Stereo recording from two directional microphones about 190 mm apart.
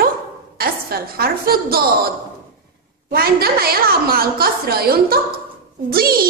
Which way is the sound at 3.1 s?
55° right (ahead or behind).